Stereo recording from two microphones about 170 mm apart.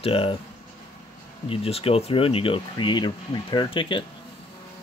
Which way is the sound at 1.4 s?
35° left (ahead or behind).